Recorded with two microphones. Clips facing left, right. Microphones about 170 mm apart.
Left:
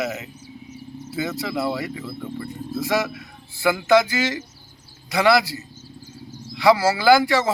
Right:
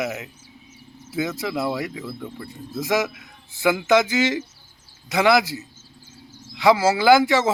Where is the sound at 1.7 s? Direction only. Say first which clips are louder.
Even; centre (ahead or behind).